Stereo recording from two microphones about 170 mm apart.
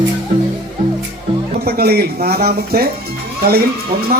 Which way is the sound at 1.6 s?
65° right (ahead or behind).